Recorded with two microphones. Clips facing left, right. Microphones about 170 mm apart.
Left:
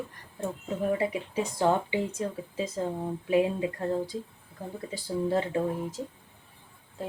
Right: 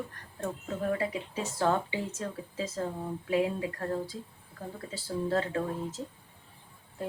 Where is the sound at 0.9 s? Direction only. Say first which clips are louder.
Left 4 dB; 20° left (ahead or behind).